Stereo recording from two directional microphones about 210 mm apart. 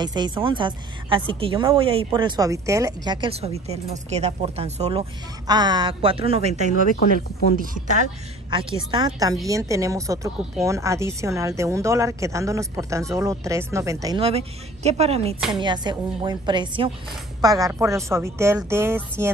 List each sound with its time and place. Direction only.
0.0 s a woman's voice: 20° right (ahead or behind)
5.5 s a woman's voice: 20° right (ahead or behind)
6.7 s speech: 40° left (ahead or behind)
7.5 s speech: 40° right (ahead or behind)
8.9 s a woman's voice: 20° right (ahead or behind)